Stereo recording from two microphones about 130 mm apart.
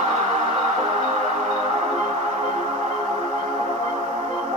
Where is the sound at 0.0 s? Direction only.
60° right (ahead or behind).